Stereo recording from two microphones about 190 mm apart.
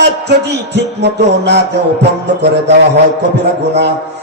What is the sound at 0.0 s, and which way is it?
Music, 60° right (ahead or behind).